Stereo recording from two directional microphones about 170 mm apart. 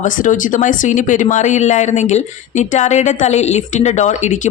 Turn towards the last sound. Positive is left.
turn(degrees=45)  # may be behind; listen again after turning